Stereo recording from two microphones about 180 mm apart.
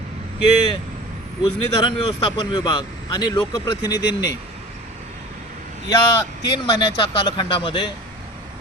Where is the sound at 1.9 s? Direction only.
25° left (ahead or behind).